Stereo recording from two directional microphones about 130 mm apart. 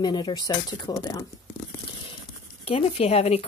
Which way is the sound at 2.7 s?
50° left (ahead or behind).